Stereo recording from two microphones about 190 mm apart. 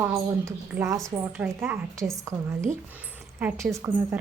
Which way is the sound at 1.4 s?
10° right (ahead or behind).